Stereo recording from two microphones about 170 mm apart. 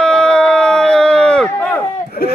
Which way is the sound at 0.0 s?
5° left (ahead or behind).